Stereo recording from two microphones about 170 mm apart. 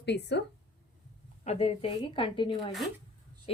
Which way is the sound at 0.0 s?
90° left.